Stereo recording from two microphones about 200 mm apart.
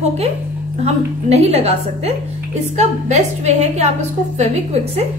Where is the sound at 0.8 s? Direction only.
30° right (ahead or behind).